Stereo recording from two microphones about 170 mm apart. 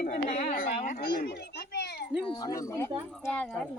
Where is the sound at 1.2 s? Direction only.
70° left (ahead or behind).